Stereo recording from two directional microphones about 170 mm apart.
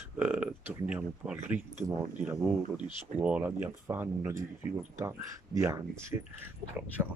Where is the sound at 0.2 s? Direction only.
5° right (ahead or behind).